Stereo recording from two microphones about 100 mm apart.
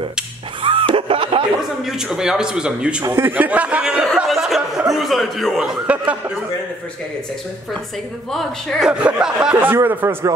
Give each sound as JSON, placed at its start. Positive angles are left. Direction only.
{"t": 0.6, "sound": "a sound", "side_deg": -60}
{"t": 1.9, "sound": "a man's voice", "side_deg": -5}
{"t": 3.1, "sound": "a man's voice", "side_deg": -25}
{"t": 4.0, "sound": "speech", "side_deg": 0}
{"t": 5.6, "sound": "a man's voice", "side_deg": -10}
{"t": 8.3, "sound": "speech", "side_deg": 5}
{"t": 8.8, "sound": "a man's voice", "side_deg": -10}
{"t": 9.6, "sound": "speech", "side_deg": -20}